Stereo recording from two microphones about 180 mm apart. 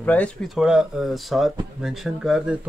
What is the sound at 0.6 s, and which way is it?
Speech, 5° right (ahead or behind).